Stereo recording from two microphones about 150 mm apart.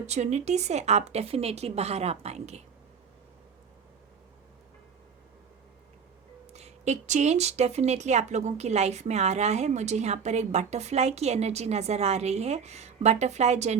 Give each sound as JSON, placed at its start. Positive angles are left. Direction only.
{"t": 0.0, "sound": "speech", "side_deg": -50}
{"t": 6.5, "sound": "speech", "side_deg": -45}